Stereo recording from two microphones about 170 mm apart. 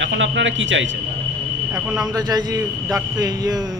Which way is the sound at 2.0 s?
20° right (ahead or behind).